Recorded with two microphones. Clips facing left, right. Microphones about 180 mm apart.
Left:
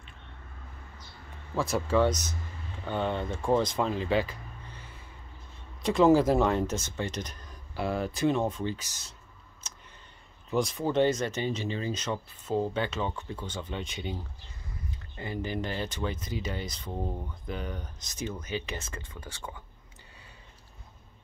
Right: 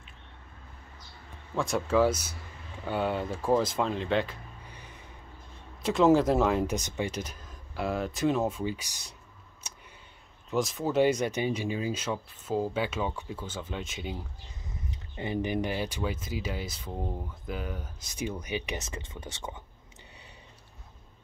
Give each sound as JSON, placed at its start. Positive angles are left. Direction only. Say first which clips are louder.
{"t": 1.5, "sound": "speech", "louder": "even", "side_deg": 0}
{"t": 4.6, "sound": "music", "louder": "even", "side_deg": -15}
{"t": 5.8, "sound": "speech", "louder": "left 1 dB", "side_deg": 0}
{"t": 6.7, "sound": "speech", "louder": "right 2 dB", "side_deg": -15}
{"t": 9.6, "sound": "a sound", "louder": "right 1 dB", "side_deg": -15}
{"t": 10.5, "sound": "speech", "louder": "even", "side_deg": 0}
{"t": 14.7, "sound": "speech", "louder": "even", "side_deg": -20}